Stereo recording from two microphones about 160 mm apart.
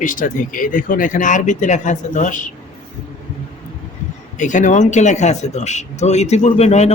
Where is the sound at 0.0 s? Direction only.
55° left (ahead or behind).